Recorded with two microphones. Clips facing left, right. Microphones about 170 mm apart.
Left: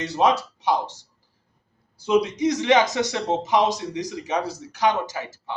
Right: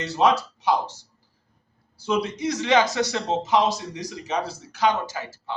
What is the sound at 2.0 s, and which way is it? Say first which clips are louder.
Speech: left 4 dB; 20° left (ahead or behind).